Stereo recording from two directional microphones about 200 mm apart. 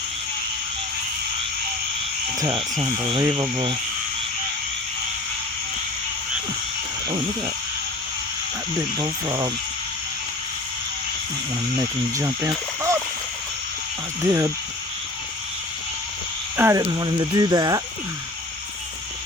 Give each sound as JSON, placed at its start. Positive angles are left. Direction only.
{"t": 2.4, "sound": "speech", "side_deg": -25}
{"t": 8.8, "sound": "speech", "side_deg": -20}
{"t": 12.1, "sound": "speech", "side_deg": -15}
{"t": 14.2, "sound": "speech", "side_deg": -15}
{"t": 16.6, "sound": "speech", "side_deg": -15}